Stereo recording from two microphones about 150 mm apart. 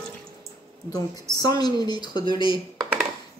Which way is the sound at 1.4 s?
25° left (ahead or behind).